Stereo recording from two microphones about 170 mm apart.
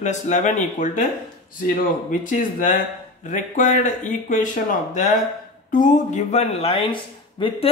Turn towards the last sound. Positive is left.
turn(degrees=30)  # may be behind; listen again after turning